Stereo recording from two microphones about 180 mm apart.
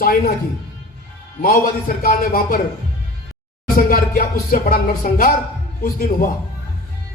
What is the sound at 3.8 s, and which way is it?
A man's voice, 50° left (ahead or behind).